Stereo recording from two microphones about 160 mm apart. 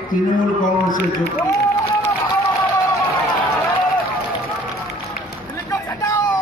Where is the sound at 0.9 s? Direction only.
70° left (ahead or behind).